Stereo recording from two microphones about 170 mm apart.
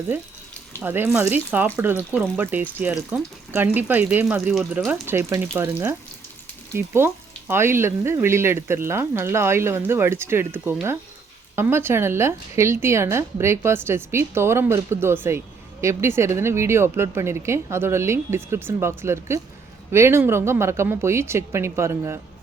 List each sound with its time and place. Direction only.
0.8 s speech: 10° right (ahead or behind)